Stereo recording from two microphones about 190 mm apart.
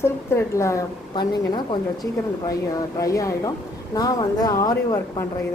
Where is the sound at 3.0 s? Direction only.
15° left (ahead or behind).